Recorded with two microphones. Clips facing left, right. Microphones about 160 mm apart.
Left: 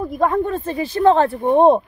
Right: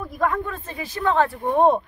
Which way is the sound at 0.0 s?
25° left (ahead or behind).